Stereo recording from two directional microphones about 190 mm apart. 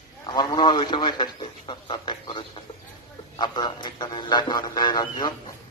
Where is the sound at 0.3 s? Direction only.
25° left (ahead or behind).